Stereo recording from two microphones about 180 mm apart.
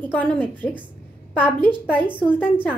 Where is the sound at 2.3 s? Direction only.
10° left (ahead or behind).